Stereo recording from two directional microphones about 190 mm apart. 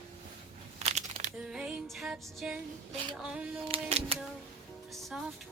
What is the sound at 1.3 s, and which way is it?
Music, 5° right (ahead or behind).